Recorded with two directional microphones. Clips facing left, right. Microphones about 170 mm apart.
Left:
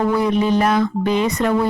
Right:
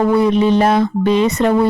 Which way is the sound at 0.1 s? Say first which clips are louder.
Right 4 dB; 25° right (ahead or behind).